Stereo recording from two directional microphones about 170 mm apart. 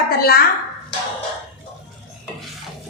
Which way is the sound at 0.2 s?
65° left (ahead or behind).